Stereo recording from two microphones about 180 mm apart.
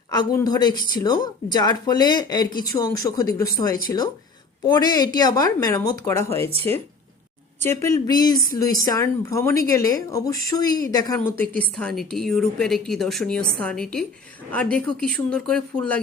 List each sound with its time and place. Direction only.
0.1 s a woman's voice: 20° left (ahead or behind)
4.6 s a woman's voice: 20° left (ahead or behind)
7.6 s a woman's voice: 15° left (ahead or behind)